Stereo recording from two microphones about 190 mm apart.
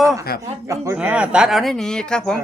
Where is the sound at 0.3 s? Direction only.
55° left (ahead or behind).